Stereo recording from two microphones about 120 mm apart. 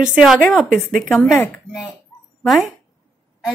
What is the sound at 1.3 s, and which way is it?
Speech, 20° left (ahead or behind).